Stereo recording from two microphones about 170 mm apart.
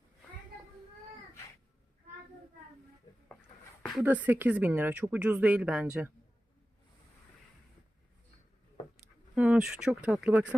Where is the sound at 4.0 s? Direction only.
10° right (ahead or behind).